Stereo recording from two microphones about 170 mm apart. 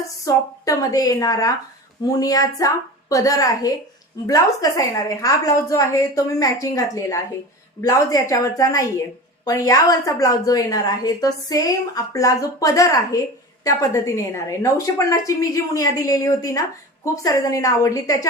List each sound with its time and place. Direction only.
0.3 s a woman's voice: 20° left (ahead or behind)